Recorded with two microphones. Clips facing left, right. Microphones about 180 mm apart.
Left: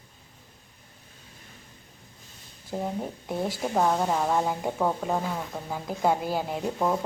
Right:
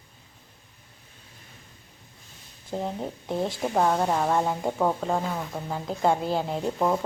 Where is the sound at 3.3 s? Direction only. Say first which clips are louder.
Right 2 dB; 25° right (ahead or behind).